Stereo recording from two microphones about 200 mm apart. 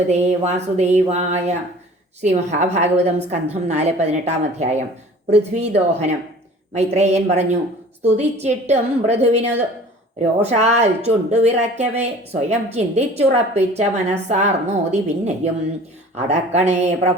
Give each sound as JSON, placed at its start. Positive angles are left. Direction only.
{"t": 0.1, "sound": "speech", "side_deg": -35}